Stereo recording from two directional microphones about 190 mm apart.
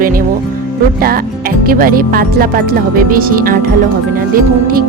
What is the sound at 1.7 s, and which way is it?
Speech, 50° right (ahead or behind).